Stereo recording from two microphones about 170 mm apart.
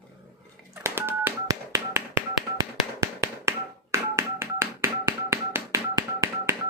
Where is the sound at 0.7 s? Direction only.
15° right (ahead or behind).